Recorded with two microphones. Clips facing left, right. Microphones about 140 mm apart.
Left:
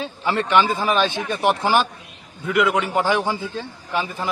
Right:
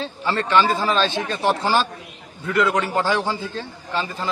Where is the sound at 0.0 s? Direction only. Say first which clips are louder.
Left 1 dB; 15° left (ahead or behind).